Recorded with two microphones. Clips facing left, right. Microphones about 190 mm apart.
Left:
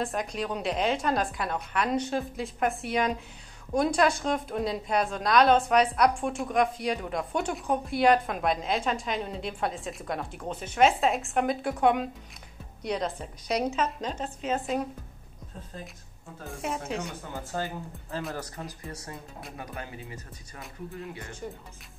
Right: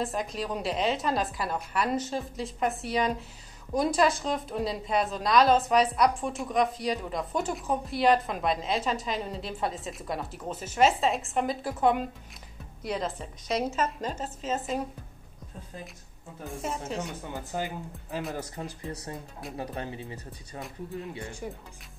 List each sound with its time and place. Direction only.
0.0 s a woman's voice: centre (ahead or behind)
16.4 s a woman's voice: centre (ahead or behind)
17.3 s speech: 15° right (ahead or behind)
19.5 s speech: 30° right (ahead or behind)